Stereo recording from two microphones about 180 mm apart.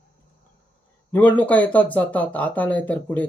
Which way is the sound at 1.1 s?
10° left (ahead or behind).